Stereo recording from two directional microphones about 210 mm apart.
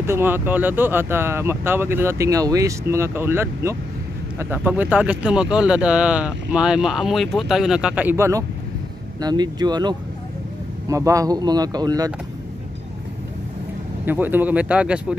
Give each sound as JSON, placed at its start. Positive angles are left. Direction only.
{"t": 0.0, "sound": "speech", "side_deg": -10}
{"t": 14.0, "sound": "speech", "side_deg": -10}